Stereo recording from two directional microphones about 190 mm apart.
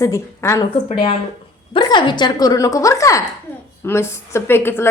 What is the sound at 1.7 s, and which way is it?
A woman's voice, 25° left (ahead or behind).